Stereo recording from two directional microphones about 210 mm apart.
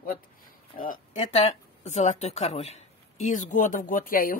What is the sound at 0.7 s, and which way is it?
Speech, 40° left (ahead or behind).